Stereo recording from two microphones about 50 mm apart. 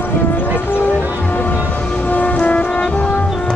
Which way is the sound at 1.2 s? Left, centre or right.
Left.